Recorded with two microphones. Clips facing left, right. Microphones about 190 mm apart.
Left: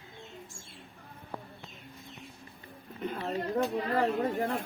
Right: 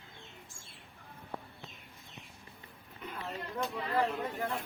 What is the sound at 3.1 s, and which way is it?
Speech, 40° left (ahead or behind).